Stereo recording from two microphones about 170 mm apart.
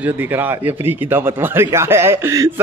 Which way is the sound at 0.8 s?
15° right (ahead or behind).